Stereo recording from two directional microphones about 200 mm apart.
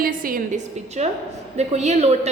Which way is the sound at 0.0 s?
45° right (ahead or behind).